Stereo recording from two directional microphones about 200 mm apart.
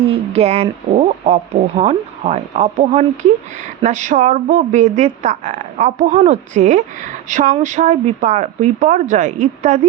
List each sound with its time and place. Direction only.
0.0 s speech: 30° right (ahead or behind)